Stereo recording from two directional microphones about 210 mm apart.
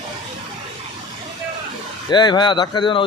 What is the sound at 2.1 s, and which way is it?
Speech, 20° left (ahead or behind).